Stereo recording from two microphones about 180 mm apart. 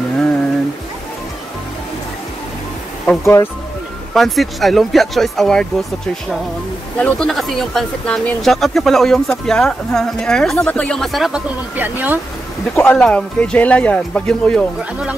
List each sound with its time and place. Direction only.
3.1 s speech: 15° left (ahead or behind)
4.1 s speech: centre (ahead or behind)
7.0 s speech: 5° left (ahead or behind)
12.7 s speech: 10° left (ahead or behind)
14.8 s speech: 5° right (ahead or behind)